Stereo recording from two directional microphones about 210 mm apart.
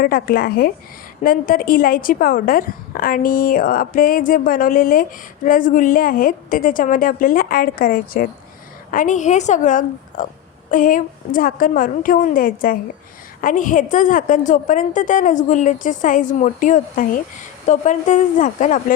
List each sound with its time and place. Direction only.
0.0 s a woman's voice: 45° left (ahead or behind)